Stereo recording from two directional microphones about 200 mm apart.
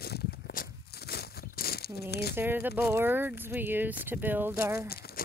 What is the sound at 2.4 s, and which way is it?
Speech, 10° right (ahead or behind).